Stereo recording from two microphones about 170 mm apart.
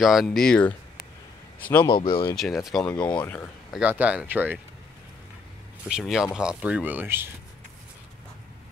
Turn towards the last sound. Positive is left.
turn(degrees=-15)  # may be behind; listen again after turning